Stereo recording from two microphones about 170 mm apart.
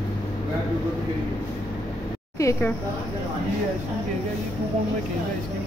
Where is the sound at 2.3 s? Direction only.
20° left (ahead or behind).